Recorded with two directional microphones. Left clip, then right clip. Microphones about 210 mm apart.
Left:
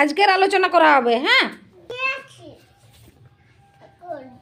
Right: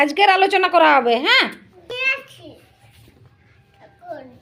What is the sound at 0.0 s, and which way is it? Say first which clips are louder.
Speech: right 2 dB; 10° left (ahead or behind).